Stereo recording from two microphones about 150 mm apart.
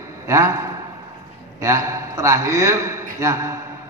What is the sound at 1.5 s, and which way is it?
A man's voice, 20° right (ahead or behind).